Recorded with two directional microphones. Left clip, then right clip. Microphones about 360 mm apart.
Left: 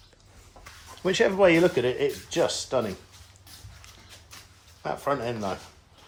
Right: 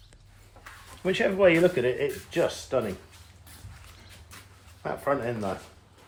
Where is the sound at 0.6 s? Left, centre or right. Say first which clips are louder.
Right 1 dB; left.